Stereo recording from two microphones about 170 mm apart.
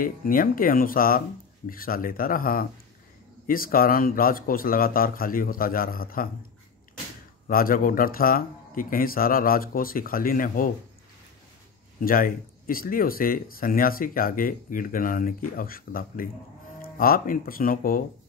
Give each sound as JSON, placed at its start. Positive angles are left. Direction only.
{"t": 0.0, "sound": "speech", "side_deg": 55}
{"t": 7.4, "sound": "speech", "side_deg": 55}
{"t": 12.0, "sound": "speech", "side_deg": 55}